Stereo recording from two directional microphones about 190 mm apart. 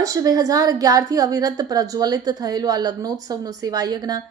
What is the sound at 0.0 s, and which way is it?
A woman's voice, 20° right (ahead or behind).